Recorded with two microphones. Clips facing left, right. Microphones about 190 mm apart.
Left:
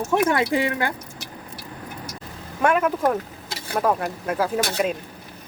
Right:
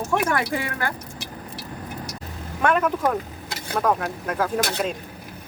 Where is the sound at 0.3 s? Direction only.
20° left (ahead or behind).